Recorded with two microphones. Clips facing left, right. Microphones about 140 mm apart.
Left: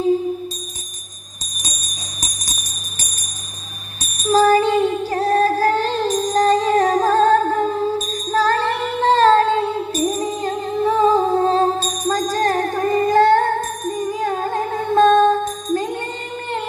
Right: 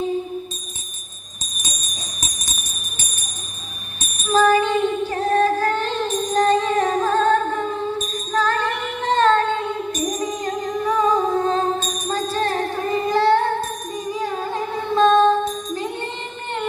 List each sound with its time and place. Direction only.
2.2 s jingle bell: 35° left (ahead or behind)
4.2 s music: 35° left (ahead or behind)